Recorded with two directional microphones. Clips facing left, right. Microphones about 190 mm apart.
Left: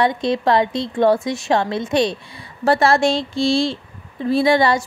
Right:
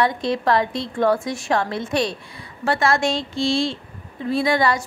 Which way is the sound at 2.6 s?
35° left (ahead or behind).